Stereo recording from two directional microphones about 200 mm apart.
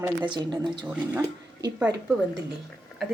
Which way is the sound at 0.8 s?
5° right (ahead or behind).